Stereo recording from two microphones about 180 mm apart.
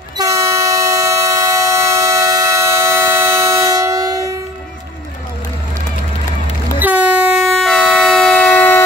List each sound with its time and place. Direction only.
0.2 s train: 15° right (ahead or behind)
6.8 s vehicle: 10° right (ahead or behind); by 8.8 s 5° left (ahead or behind)